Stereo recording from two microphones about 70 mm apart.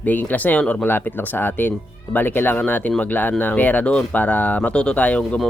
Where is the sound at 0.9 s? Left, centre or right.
Left.